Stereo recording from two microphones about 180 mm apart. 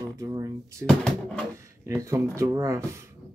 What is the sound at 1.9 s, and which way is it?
Speech, 15° right (ahead or behind).